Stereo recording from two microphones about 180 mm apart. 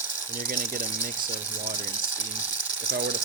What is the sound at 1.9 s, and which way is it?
Ratchet, 10° right (ahead or behind).